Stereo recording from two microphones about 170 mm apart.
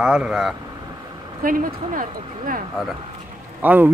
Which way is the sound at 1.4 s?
55° right (ahead or behind).